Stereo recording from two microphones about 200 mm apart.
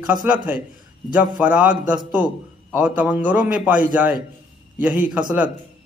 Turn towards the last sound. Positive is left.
turn(degrees=-5)  # may be behind; listen again after turning